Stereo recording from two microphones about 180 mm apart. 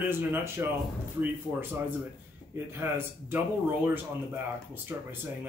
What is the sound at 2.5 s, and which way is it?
Speech, 10° right (ahead or behind).